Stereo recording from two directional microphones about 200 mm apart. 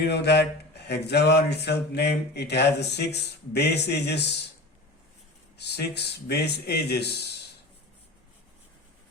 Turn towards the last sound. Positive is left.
turn(degrees=55)  # may be behind; listen again after turning